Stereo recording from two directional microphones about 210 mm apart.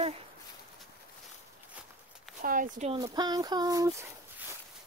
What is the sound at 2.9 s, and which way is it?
Speech, 20° right (ahead or behind).